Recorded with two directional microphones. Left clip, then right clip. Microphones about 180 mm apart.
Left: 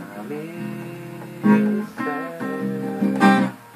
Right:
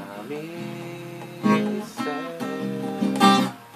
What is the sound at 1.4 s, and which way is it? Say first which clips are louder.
Music: left 3 dB; 30° right (ahead or behind).